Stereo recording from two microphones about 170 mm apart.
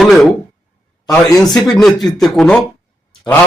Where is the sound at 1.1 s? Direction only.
20° left (ahead or behind).